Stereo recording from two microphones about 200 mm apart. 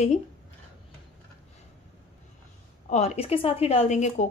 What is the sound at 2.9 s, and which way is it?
Speech, 30° left (ahead or behind).